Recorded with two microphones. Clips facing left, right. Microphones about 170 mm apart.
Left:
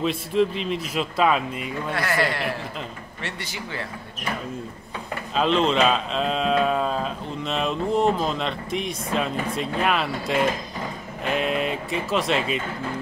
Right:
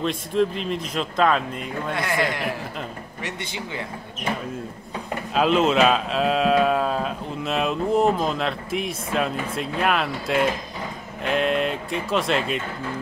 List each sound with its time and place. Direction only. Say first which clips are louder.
0.0 s speech: even; centre (ahead or behind)
2.0 s a man's voice: left 1 dB; 20° right (ahead or behind)
5.3 s speech: right 2 dB; 5° right (ahead or behind)